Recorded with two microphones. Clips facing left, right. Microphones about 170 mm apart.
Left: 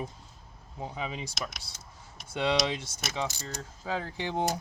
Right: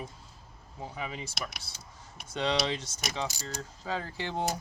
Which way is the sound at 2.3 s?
10° left (ahead or behind).